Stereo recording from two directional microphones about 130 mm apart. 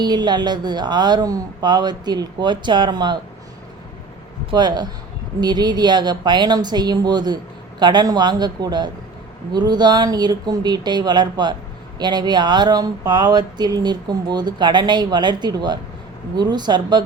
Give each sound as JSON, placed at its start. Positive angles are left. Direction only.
{"t": 0.0, "sound": "speech", "side_deg": -35}
{"t": 4.5, "sound": "speech", "side_deg": -35}